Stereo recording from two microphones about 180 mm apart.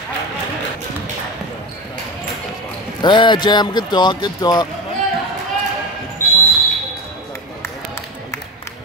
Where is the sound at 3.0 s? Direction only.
25° left (ahead or behind).